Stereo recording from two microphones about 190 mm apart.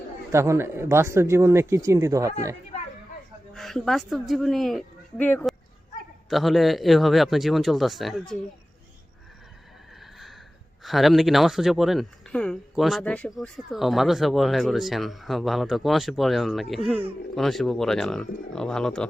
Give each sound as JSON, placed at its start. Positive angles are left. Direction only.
{"t": 0.3, "sound": "speech", "side_deg": -15}
{"t": 3.5, "sound": "a woman's voice", "side_deg": 0}
{"t": 10.0, "sound": "neigh", "side_deg": 0}
{"t": 10.8, "sound": "speech", "side_deg": 0}